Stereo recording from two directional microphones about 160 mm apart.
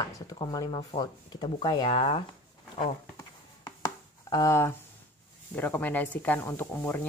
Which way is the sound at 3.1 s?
25° left (ahead or behind).